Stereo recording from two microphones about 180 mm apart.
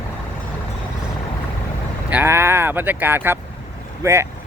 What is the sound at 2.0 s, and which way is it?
Speech, 10° right (ahead or behind).